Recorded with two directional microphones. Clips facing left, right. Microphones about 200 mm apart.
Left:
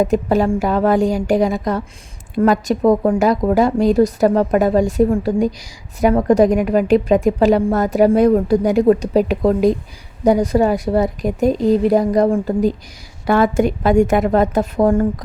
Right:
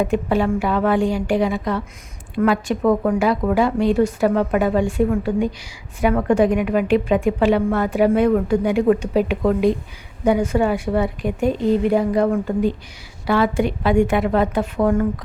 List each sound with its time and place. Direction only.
0.0 s a woman's voice: 40° left (ahead or behind)